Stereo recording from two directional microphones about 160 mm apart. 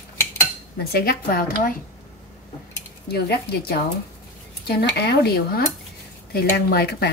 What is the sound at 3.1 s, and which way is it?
A woman's voice, 90° left.